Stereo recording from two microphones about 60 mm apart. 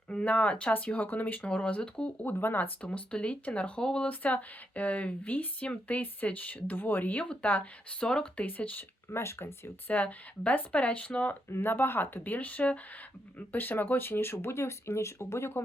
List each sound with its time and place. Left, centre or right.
0.1 s speech: centre
1.4 s speech: centre
2.2 s speech: left; by 8.4 s centre
8.4 s speech: left
9.0 s speech: left
9.8 s speech: left
11.4 s speech: left